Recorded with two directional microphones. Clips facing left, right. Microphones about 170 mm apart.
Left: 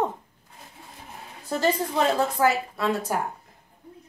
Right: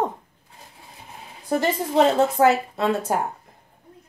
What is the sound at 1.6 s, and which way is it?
A woman's voice, 20° right (ahead or behind).